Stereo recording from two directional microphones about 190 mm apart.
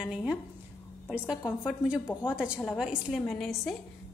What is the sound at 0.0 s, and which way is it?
A woman's voice, 5° right (ahead or behind).